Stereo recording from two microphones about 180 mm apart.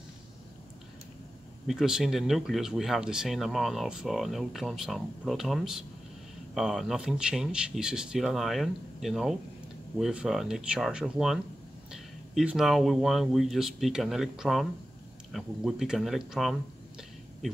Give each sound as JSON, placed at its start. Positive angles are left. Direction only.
{"t": 1.7, "sound": "speech", "side_deg": 0}